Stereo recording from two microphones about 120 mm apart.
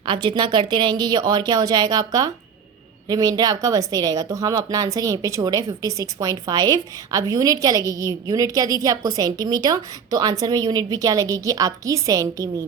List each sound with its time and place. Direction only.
0.0 s a woman's voice: 40° right (ahead or behind)